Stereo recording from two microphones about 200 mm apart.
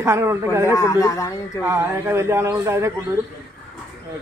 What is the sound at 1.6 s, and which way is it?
A man's voice, 15° right (ahead or behind).